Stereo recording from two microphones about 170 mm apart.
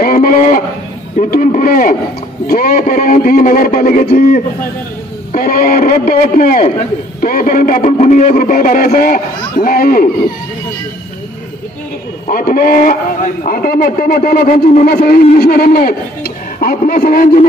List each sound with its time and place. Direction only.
0.0 s a sound: 50° left (ahead or behind)
2.4 s a man's voice: 60° left (ahead or behind)
12.3 s a man's voice: 55° left (ahead or behind)
15.0 s a man's voice: 45° left (ahead or behind)
15.3 s a man's voice: 60° left (ahead or behind)